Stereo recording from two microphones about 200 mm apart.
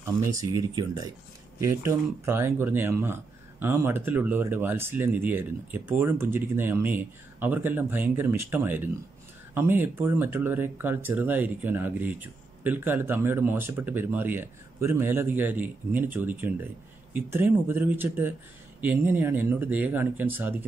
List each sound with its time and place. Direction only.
0.4 s speech: 20° right (ahead or behind)